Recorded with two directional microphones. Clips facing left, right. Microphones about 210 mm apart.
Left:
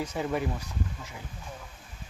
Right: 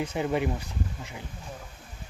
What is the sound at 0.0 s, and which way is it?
Speech, 25° right (ahead or behind).